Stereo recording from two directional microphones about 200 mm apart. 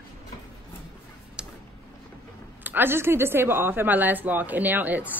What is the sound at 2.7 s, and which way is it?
Speech, 10° right (ahead or behind).